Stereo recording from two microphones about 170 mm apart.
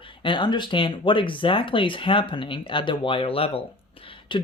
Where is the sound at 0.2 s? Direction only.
30° left (ahead or behind).